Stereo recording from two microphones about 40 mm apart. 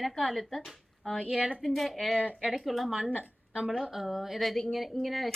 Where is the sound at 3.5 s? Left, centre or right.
Right.